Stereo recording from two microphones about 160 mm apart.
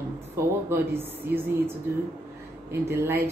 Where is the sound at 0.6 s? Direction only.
15° right (ahead or behind).